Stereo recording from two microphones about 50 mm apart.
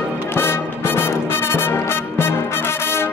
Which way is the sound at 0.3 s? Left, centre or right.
Left.